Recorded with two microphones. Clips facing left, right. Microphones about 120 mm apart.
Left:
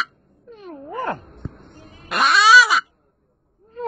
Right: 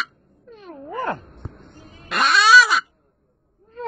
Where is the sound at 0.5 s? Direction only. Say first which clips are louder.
Left 1 dB; 25° left (ahead or behind).